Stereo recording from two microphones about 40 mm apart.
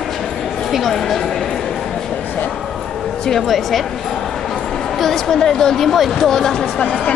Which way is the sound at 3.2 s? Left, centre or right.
Centre.